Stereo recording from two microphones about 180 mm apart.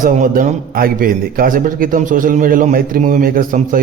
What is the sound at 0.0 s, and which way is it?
A man's voice, 45° right (ahead or behind).